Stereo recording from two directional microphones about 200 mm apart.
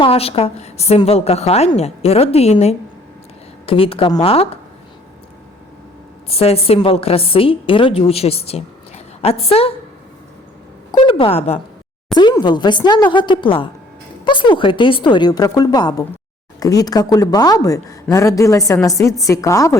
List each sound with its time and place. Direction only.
0.0 s a woman's voice: 30° left (ahead or behind)
6.2 s a woman's voice: 30° left (ahead or behind)
10.9 s a woman's voice: 25° left (ahead or behind)
12.1 s a woman's voice: 20° left (ahead or behind)